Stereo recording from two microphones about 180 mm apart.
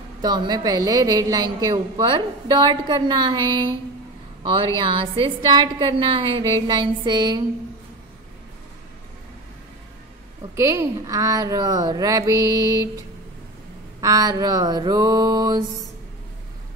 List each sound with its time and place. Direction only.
0.2 s a woman's voice: 25° right (ahead or behind)
10.5 s a woman's voice: 15° right (ahead or behind)
14.0 s a woman's voice: 20° right (ahead or behind)